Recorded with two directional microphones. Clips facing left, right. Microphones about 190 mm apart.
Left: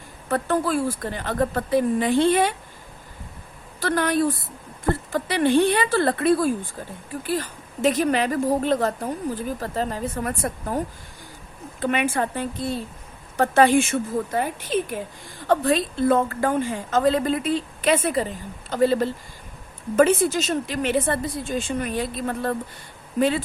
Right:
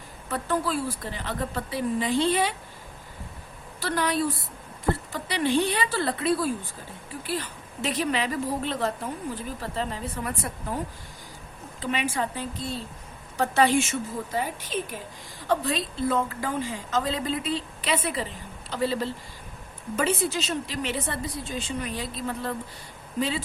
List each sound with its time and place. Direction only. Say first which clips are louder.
0.3 s a woman's voice: left 5 dB; 55° left (ahead or behind)
3.8 s a woman's voice: left 5 dB; 50° left (ahead or behind)
11.8 s a woman's voice: left 5 dB; 55° left (ahead or behind)
15.4 s a woman's voice: left 6 dB; 55° left (ahead or behind)